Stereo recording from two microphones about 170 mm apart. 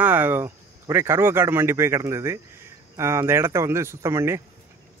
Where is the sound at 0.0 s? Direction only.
10° right (ahead or behind).